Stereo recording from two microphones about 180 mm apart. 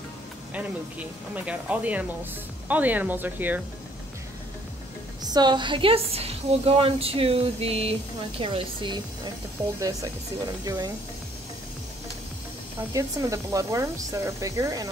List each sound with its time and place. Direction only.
0.5 s speech: 10° right (ahead or behind)
5.2 s a woman's voice: 25° right (ahead or behind)
12.9 s speech: 20° right (ahead or behind)